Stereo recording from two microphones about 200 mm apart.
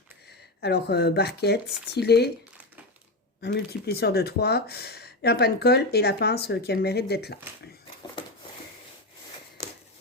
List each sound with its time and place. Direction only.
0.3 s speech: 55° left (ahead or behind)
3.4 s speech: 55° left (ahead or behind)